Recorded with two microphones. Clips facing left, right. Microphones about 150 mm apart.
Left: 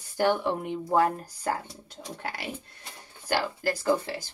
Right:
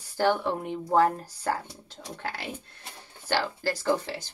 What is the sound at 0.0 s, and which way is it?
A woman's voice, 15° left (ahead or behind).